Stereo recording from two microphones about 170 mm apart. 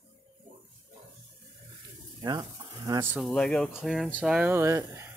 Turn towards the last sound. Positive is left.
turn(degrees=-15)  # may be behind; listen again after turning